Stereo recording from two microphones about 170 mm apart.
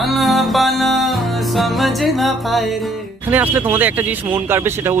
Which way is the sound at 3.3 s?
10° right (ahead or behind).